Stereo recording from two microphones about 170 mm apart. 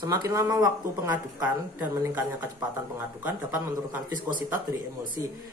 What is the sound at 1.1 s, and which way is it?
Speech, 10° right (ahead or behind).